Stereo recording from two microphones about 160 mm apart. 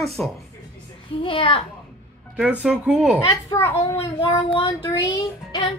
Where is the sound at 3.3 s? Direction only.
25° left (ahead or behind).